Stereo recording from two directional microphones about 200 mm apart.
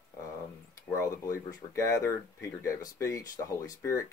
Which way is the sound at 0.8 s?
15° left (ahead or behind).